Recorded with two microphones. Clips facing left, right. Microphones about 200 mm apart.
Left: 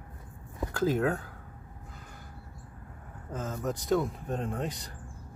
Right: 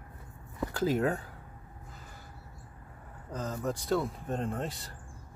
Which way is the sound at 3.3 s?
5° left (ahead or behind).